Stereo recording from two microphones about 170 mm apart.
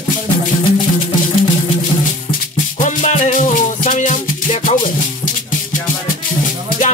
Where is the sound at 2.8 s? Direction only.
45° left (ahead or behind).